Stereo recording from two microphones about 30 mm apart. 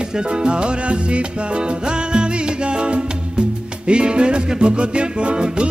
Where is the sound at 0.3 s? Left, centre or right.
Right.